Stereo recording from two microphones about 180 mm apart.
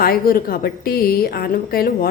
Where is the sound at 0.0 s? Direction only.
55° left (ahead or behind).